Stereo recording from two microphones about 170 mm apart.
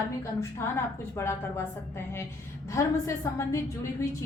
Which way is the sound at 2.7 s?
20° left (ahead or behind).